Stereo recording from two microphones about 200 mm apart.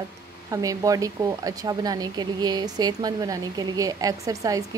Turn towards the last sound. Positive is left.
turn(degrees=-15)  # may be behind; listen again after turning